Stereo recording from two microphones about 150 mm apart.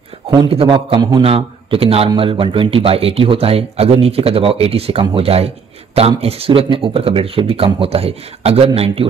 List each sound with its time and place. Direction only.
0.5 s a man's voice: 35° right (ahead or behind)